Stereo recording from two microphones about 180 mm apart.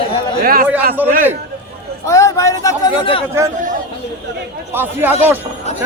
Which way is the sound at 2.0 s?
15° left (ahead or behind).